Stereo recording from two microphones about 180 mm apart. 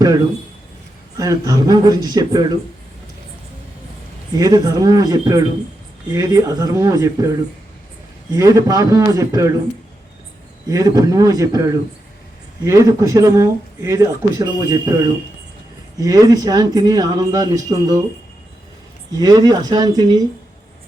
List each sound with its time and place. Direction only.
0.0 s speech: 20° right (ahead or behind)
4.4 s speech: 20° right (ahead or behind)
10.7 s speech: 20° right (ahead or behind)
16.0 s speech: 20° right (ahead or behind)
19.1 s speech: 20° right (ahead or behind)